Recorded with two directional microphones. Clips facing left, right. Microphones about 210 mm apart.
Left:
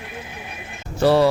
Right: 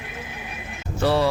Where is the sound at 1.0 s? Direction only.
40° left (ahead or behind).